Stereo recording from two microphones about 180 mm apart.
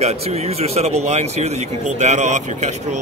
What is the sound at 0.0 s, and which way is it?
Speech, 35° right (ahead or behind).